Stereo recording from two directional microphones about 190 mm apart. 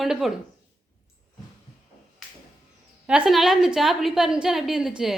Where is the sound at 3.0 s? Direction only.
5° right (ahead or behind).